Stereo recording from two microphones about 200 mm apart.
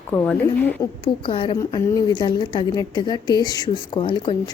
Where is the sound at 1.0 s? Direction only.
25° left (ahead or behind).